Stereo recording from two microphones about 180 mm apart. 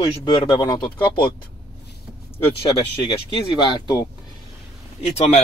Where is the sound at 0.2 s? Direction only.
20° left (ahead or behind).